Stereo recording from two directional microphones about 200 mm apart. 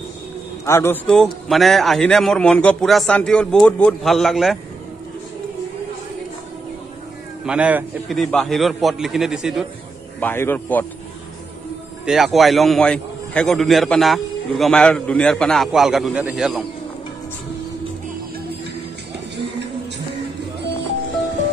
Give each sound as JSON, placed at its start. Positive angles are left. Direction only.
{"t": 0.7, "sound": "a man's voice", "side_deg": 10}
{"t": 7.4, "sound": "a man's voice", "side_deg": -5}
{"t": 10.2, "sound": "speech", "side_deg": 10}
{"t": 12.1, "sound": "a man's voice", "side_deg": 0}